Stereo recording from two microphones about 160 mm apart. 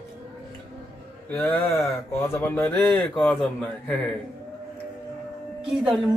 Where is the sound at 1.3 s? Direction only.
15° left (ahead or behind).